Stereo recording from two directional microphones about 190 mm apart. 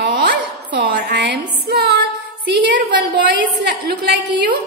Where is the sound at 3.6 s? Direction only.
65° right (ahead or behind).